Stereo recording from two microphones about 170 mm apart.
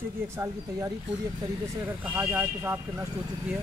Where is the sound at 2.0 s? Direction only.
10° right (ahead or behind).